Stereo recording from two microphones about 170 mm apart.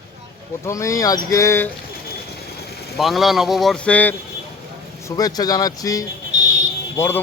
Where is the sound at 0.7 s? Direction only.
20° left (ahead or behind).